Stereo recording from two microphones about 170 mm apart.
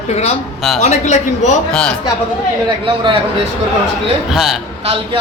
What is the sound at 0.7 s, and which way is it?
Speech, 45° left (ahead or behind).